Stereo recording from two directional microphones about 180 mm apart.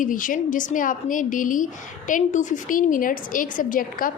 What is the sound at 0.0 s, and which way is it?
A woman's voice, 50° left (ahead or behind).